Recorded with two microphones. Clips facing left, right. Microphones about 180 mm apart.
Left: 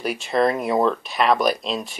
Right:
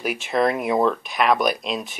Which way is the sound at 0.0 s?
Centre (ahead or behind).